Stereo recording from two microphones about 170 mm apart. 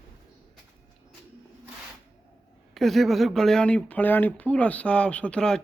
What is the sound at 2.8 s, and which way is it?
Speech, centre (ahead or behind).